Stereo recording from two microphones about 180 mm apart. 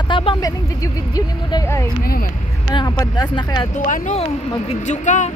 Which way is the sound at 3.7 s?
45° left (ahead or behind).